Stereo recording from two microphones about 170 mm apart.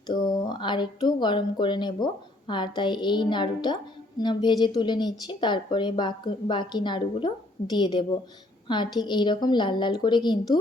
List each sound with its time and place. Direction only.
0.1 s a woman's voice: 25° left (ahead or behind)